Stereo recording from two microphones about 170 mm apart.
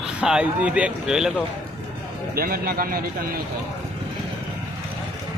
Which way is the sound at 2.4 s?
60° right (ahead or behind).